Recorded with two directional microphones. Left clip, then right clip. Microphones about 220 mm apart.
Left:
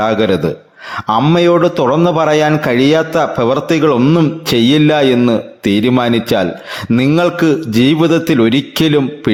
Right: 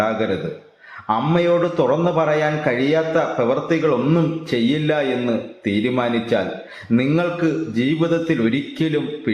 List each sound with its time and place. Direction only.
1.0 s a man's voice: 50° left (ahead or behind)